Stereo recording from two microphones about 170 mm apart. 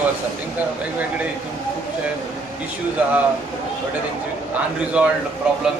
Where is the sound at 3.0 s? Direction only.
10° right (ahead or behind).